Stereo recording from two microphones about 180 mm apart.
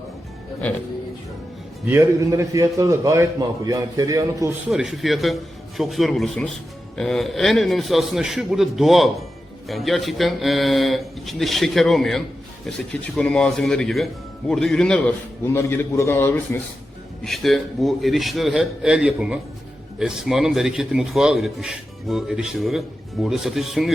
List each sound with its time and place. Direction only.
1.9 s a man's voice: 15° right (ahead or behind)
4.7 s a man's voice: centre (ahead or behind)
17.2 s a man's voice: centre (ahead or behind)